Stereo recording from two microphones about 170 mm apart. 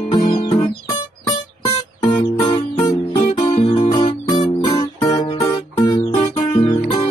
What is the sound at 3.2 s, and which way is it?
Music, 40° left (ahead or behind).